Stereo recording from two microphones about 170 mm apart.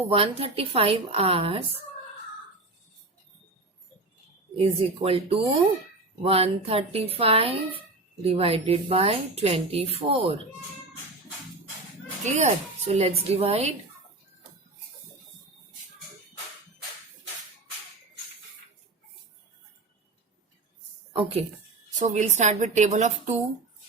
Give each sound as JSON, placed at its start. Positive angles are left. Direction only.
{"t": 0.0, "sound": "speech", "side_deg": -35}
{"t": 4.8, "sound": "speech", "side_deg": -35}
{"t": 12.2, "sound": "speech", "side_deg": -40}
{"t": 21.1, "sound": "a woman's voice", "side_deg": -30}
{"t": 21.9, "sound": "a woman's voice", "side_deg": -45}